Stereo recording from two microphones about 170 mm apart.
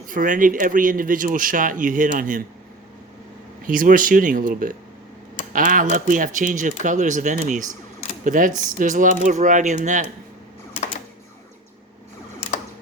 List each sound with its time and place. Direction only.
0.1 s speech: 50° right (ahead or behind)
3.7 s speech: 55° right (ahead or behind)